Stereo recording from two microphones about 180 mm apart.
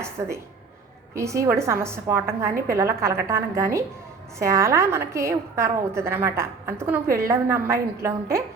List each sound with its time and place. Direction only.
0.0 s a woman's voice: 15° right (ahead or behind)